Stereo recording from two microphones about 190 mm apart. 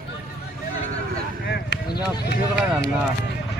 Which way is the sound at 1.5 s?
60° left (ahead or behind).